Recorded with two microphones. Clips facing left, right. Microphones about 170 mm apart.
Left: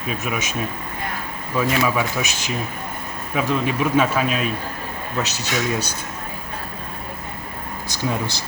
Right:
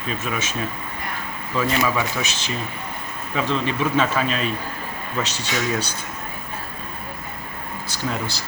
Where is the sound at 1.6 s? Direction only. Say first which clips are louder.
Left 1 dB; 10° left (ahead or behind).